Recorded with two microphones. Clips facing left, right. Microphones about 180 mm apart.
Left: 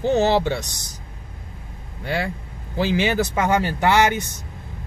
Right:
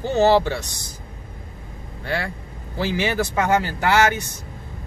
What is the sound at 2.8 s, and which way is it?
Speech, 20° left (ahead or behind).